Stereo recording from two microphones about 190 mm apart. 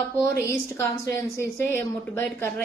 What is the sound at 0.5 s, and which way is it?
A woman's voice, 15° left (ahead or behind).